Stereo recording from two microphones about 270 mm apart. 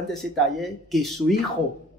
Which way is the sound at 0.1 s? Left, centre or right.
Centre.